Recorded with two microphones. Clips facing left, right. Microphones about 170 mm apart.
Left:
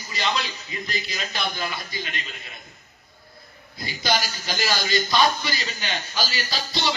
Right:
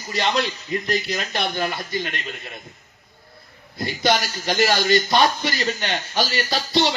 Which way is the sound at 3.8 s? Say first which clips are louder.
Right 5 dB; 60° right (ahead or behind).